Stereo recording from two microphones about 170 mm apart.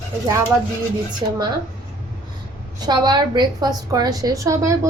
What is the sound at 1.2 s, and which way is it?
Speech, 30° right (ahead or behind).